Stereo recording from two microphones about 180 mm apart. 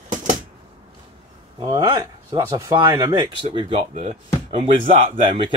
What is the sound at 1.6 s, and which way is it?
Speech, 20° right (ahead or behind).